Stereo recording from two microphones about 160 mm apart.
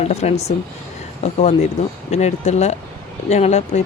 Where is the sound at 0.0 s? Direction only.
40° left (ahead or behind).